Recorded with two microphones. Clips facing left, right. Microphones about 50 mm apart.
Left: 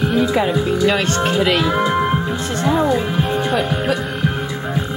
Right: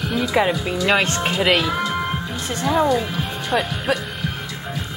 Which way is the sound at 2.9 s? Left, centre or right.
Centre.